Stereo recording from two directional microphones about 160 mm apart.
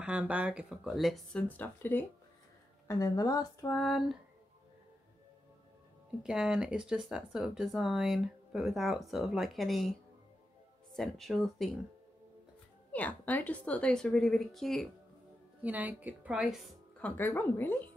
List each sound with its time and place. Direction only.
0.0 s speech: 10° right (ahead or behind)
1.6 s a woman's voice: 15° left (ahead or behind)
3.7 s speech: centre (ahead or behind)
6.2 s speech: 5° right (ahead or behind)
12.9 s speech: 10° left (ahead or behind)
15.6 s speech: 10° right (ahead or behind)
17.0 s a woman's voice: 15° left (ahead or behind)